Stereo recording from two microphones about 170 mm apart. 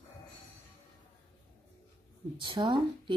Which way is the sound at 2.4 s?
25° right (ahead or behind).